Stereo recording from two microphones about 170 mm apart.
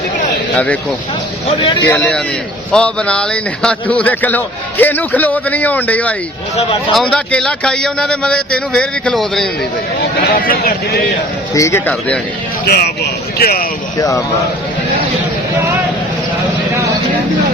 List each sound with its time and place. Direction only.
0.5 s a man's voice: 5° left (ahead or behind)
1.8 s a man's voice: 10° left (ahead or behind)
6.6 s speech: 35° left (ahead or behind)
6.9 s speech: 5° left (ahead or behind)
10.0 s speech: 60° left (ahead or behind)
11.5 s speech: 20° left (ahead or behind)
11.9 s a man's voice: 5° left (ahead or behind)
12.6 s speech: 70° left (ahead or behind)
14.0 s speech: 20° left (ahead or behind)